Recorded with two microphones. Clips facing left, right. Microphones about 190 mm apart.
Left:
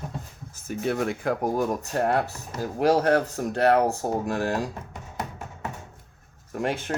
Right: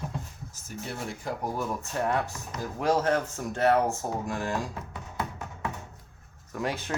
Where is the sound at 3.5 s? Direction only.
65° left (ahead or behind).